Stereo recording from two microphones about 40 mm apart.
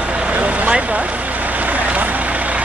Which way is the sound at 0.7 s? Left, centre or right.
Right.